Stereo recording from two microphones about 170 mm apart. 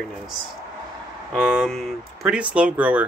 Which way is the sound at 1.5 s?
Centre (ahead or behind).